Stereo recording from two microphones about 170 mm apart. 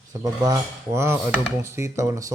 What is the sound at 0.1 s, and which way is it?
Speech, 20° right (ahead or behind).